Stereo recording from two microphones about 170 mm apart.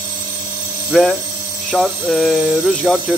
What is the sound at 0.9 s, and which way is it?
Speech, centre (ahead or behind).